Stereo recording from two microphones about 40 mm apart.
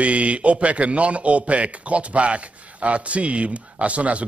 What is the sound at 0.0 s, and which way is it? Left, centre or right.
A man's voice, right.